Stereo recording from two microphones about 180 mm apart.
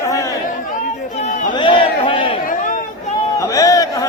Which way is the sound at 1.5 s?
30° left (ahead or behind).